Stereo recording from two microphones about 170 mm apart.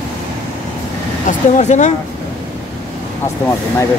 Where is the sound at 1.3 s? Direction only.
45° left (ahead or behind).